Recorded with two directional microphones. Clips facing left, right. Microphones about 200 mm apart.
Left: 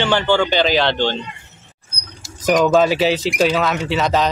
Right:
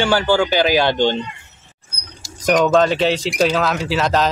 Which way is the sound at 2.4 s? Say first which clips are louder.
Even; 5° left (ahead or behind).